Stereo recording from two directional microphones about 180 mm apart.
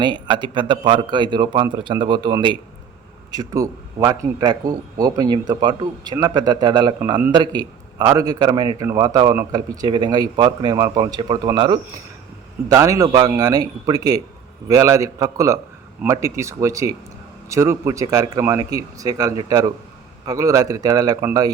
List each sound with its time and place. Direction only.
0.0 s a man's voice: 25° right (ahead or behind)